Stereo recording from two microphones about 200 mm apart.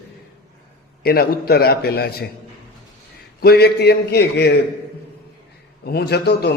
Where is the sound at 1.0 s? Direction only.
50° left (ahead or behind).